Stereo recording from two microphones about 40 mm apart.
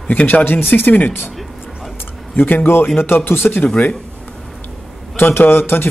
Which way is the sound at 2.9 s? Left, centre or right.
Left.